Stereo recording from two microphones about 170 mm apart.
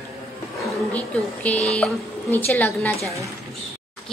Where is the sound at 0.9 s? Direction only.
10° left (ahead or behind).